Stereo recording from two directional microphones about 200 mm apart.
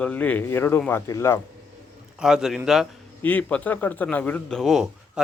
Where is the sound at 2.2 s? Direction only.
5° right (ahead or behind).